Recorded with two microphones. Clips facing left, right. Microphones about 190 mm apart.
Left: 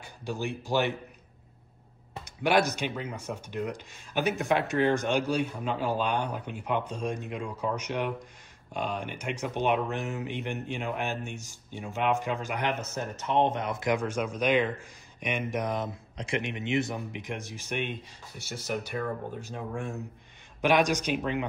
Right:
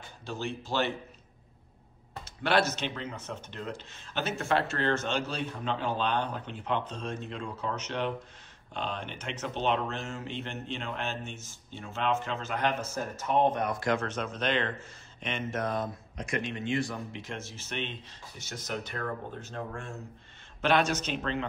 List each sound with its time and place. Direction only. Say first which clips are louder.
0.0 s speech: left 3 dB; 10° left (ahead or behind)
2.1 s speech: left 2 dB; 15° left (ahead or behind)
20.6 s speech: left 2 dB; 15° left (ahead or behind)